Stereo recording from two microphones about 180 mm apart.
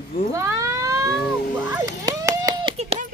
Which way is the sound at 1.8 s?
20° right (ahead or behind).